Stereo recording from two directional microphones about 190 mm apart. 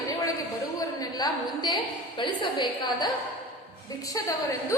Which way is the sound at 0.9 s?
20° left (ahead or behind).